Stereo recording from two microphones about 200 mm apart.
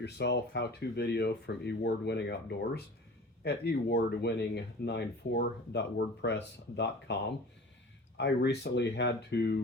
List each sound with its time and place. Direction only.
0.0 s speech: 60° left (ahead or behind)